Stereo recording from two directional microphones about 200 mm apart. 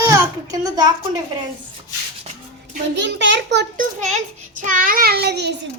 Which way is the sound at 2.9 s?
65° right (ahead or behind).